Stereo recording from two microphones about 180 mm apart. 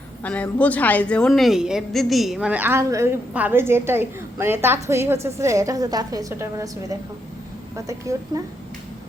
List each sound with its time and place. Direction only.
0.2 s a woman's voice: 10° left (ahead or behind); by 6.7 s 20° right (ahead or behind)
7.9 s a woman's voice: 20° right (ahead or behind)